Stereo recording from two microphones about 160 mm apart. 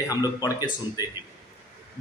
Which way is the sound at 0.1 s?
25° left (ahead or behind).